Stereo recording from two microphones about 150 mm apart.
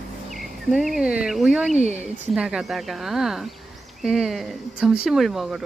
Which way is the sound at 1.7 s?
50° right (ahead or behind).